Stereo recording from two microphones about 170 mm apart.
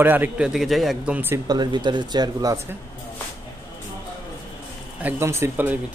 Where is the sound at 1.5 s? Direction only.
25° right (ahead or behind).